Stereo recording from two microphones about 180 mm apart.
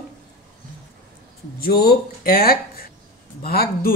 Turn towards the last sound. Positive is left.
turn(degrees=55)  # may be behind; listen again after turning